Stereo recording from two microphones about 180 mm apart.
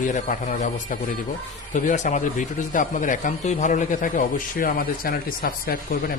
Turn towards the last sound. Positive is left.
turn(degrees=55)  # may be behind; listen again after turning